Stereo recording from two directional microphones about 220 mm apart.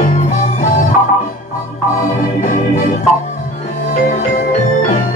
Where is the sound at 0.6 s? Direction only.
40° left (ahead or behind).